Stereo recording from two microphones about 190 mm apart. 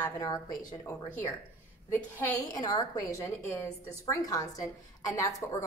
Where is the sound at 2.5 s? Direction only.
20° left (ahead or behind).